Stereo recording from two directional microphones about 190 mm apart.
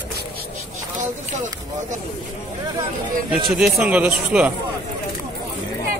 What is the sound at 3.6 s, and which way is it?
Speech, 5° right (ahead or behind).